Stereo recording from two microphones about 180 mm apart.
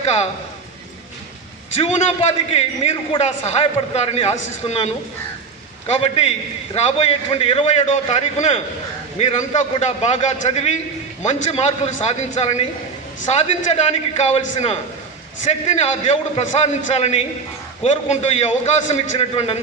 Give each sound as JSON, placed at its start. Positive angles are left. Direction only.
{"t": 0.0, "sound": "a man's voice", "side_deg": 35}
{"t": 1.7, "sound": "a man's voice", "side_deg": 35}
{"t": 5.9, "sound": "a man's voice", "side_deg": 35}
{"t": 15.4, "sound": "a man's voice", "side_deg": 40}